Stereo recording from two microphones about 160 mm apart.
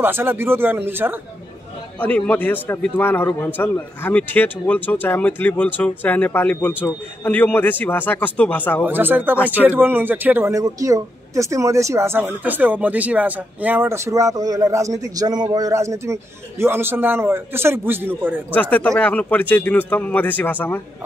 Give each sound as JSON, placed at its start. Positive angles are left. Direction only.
{"t": 0.0, "sound": "speech", "side_deg": -15}
{"t": 2.0, "sound": "a man's voice", "side_deg": 10}
{"t": 8.8, "sound": "speech", "side_deg": -10}
{"t": 18.5, "sound": "a man's voice", "side_deg": 10}